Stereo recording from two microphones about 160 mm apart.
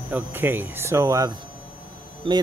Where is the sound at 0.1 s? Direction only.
15° right (ahead or behind).